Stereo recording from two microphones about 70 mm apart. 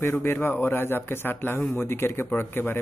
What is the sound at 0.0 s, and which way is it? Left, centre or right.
Speech, left.